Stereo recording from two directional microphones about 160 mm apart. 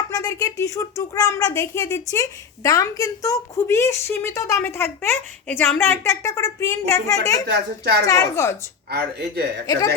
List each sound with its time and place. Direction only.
0.1 s a woman's voice: 20° left (ahead or behind)
7.4 s a child's voice: 90° right
8.0 s a woman's voice: 20° left (ahead or behind)
8.9 s speech: 80° right